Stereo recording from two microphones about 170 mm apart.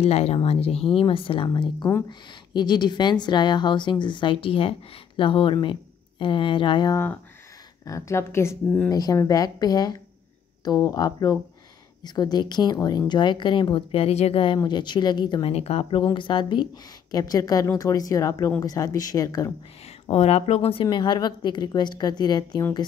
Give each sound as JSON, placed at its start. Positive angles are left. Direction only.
{"t": 0.0, "sound": "a woman's voice", "side_deg": 40}
{"t": 20.1, "sound": "a woman's voice", "side_deg": 40}